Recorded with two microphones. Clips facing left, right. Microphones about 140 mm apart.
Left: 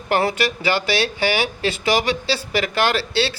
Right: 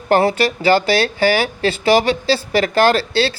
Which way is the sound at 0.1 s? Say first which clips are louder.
Right 5 dB; 30° right (ahead or behind).